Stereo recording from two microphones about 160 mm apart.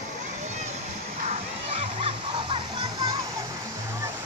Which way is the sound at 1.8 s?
40° right (ahead or behind).